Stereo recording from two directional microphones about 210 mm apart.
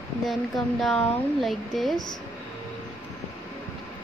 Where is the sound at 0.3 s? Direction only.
Centre (ahead or behind).